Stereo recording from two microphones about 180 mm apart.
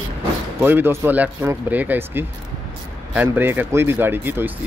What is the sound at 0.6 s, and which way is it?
Speech, 10° right (ahead or behind).